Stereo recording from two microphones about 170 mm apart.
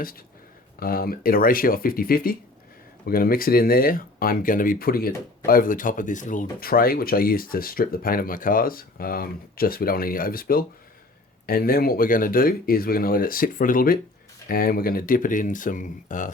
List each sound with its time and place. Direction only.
0.8 s speech: 60° left (ahead or behind)